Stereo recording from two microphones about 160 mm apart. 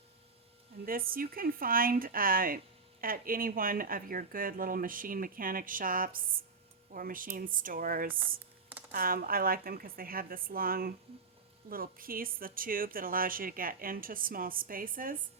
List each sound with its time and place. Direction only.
0.9 s a woman's voice: 65° right (ahead or behind)